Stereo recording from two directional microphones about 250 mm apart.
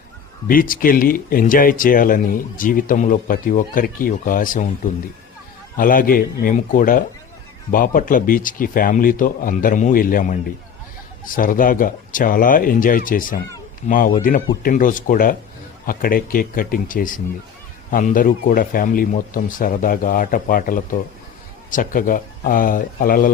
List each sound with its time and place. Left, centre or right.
0.4 s speech: left
5.7 s speech: left